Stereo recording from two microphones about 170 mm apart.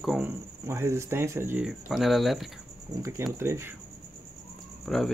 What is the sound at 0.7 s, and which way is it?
Speech, 15° right (ahead or behind).